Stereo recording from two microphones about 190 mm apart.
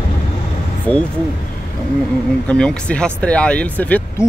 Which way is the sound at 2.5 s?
5° left (ahead or behind).